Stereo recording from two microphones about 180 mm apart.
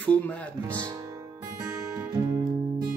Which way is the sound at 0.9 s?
20° right (ahead or behind).